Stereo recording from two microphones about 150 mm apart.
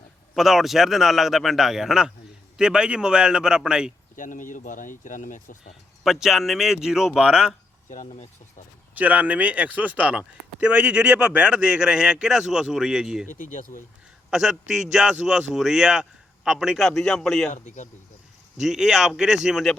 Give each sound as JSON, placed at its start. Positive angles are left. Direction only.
{"t": 0.3, "sound": "a man's voice", "side_deg": 0}
{"t": 4.2, "sound": "speech", "side_deg": 60}
{"t": 6.0, "sound": "a man's voice", "side_deg": -5}
{"t": 7.9, "sound": "speech", "side_deg": 55}
{"t": 9.0, "sound": "speech", "side_deg": -10}
{"t": 13.2, "sound": "speech", "side_deg": 65}
{"t": 14.3, "sound": "a man's voice", "side_deg": -5}
{"t": 17.5, "sound": "speech", "side_deg": 55}
{"t": 18.6, "sound": "a man's voice", "side_deg": 0}